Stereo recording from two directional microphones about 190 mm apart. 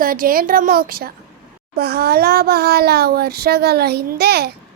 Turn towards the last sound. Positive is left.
turn(degrees=-55)  # may be behind; listen again after turning